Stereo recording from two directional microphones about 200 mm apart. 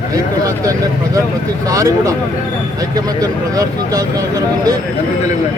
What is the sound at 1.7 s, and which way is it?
Speech, 15° right (ahead or behind).